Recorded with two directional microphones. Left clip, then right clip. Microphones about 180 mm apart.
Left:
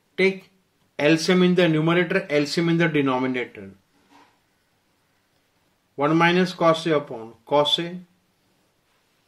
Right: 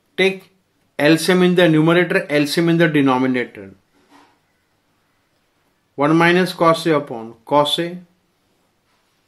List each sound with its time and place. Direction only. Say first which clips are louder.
0.9 s speech: right 5 dB; 20° right (ahead or behind)
5.9 s speech: right 5 dB; 20° right (ahead or behind)